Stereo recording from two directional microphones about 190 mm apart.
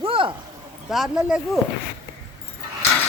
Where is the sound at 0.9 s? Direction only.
Centre (ahead or behind).